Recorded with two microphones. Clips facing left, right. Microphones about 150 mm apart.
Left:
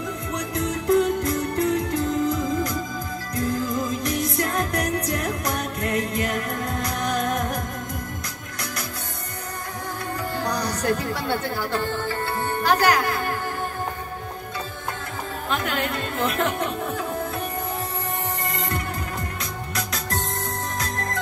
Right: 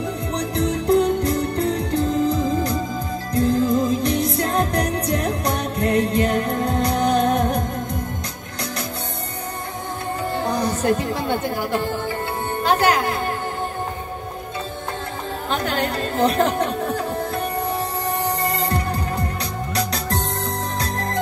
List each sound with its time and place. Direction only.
0.3 s music: 30° right (ahead or behind)
10.3 s music: 25° right (ahead or behind)
15.5 s speech: 35° right (ahead or behind)
18.2 s music: 35° right (ahead or behind)